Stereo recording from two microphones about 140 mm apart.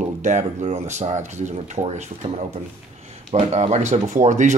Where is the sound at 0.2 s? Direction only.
55° right (ahead or behind).